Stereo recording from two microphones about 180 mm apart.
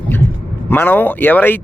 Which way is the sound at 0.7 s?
10° left (ahead or behind).